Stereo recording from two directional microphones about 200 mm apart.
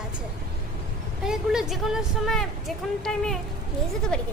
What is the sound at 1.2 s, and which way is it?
Speech, 5° right (ahead or behind).